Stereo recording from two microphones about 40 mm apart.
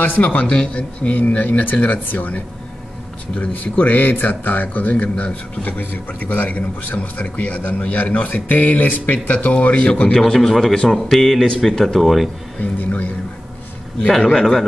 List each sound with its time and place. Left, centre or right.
0.0 s a man's voice: left
10.1 s a man's voice: centre
12.0 s speech: centre
12.5 s a man's voice: left
14.4 s speech: centre